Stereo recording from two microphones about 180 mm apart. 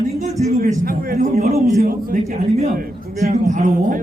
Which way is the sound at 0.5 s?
55° right (ahead or behind).